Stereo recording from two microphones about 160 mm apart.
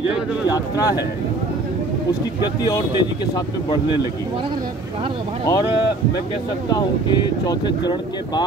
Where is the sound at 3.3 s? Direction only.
25° left (ahead or behind).